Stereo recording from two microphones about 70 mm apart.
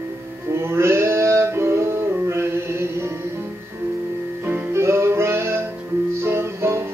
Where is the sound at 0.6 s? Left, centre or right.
Right.